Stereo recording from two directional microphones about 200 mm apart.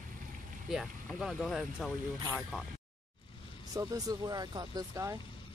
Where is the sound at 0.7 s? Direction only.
Centre (ahead or behind).